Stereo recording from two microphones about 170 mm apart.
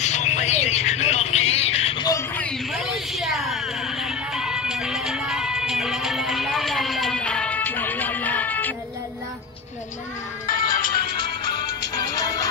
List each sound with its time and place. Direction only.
0.0 s music: 40° left (ahead or behind)
2.0 s a sound: 15° left (ahead or behind)
10.5 s music: 55° left (ahead or behind)